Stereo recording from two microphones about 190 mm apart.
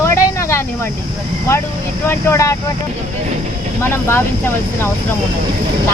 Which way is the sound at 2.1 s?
15° left (ahead or behind).